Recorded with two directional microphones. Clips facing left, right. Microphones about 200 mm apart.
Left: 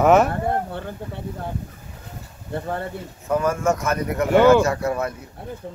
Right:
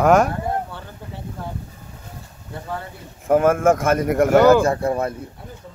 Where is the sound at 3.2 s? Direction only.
55° right (ahead or behind); by 5.1 s 30° right (ahead or behind).